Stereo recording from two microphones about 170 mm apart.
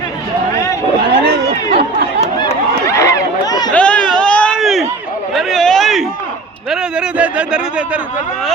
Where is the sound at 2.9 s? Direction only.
20° left (ahead or behind).